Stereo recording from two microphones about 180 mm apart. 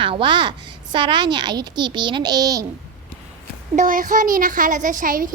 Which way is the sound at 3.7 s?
50° right (ahead or behind).